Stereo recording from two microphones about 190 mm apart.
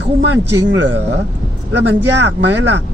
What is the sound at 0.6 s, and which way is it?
Speech, 80° right.